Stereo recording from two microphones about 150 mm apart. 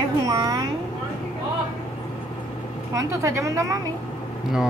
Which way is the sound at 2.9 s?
20° right (ahead or behind).